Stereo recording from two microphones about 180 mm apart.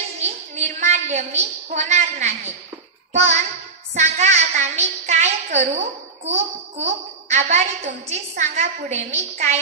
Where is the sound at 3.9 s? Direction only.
40° right (ahead or behind).